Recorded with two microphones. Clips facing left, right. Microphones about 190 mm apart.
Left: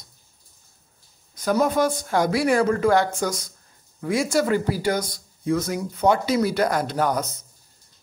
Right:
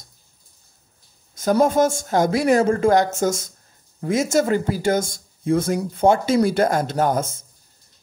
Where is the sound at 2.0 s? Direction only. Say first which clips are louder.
Right 3 dB; 45° right (ahead or behind).